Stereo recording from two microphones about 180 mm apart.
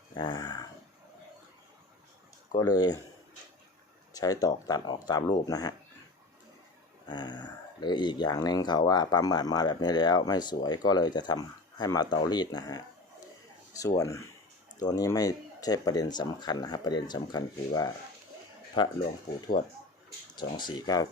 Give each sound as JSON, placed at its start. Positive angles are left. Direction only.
{"t": 0.1, "sound": "speech", "side_deg": 25}
{"t": 2.5, "sound": "speech", "side_deg": 20}
{"t": 4.1, "sound": "speech", "side_deg": 20}
{"t": 7.1, "sound": "speech", "side_deg": 25}
{"t": 20.3, "sound": "speech", "side_deg": 25}